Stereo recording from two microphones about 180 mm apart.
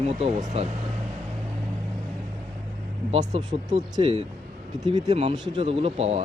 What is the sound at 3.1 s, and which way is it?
Speech, 40° right (ahead or behind).